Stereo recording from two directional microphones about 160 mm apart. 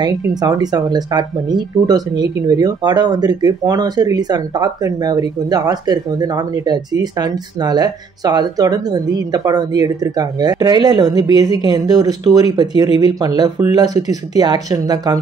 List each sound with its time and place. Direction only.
0.0 s speech: 25° right (ahead or behind)